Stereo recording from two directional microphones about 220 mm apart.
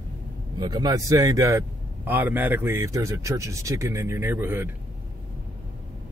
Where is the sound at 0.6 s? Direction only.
15° right (ahead or behind).